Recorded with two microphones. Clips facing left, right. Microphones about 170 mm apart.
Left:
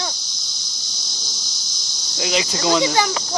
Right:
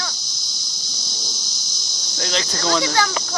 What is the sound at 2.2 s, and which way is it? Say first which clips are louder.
Speech: left 3 dB; 10° left (ahead or behind).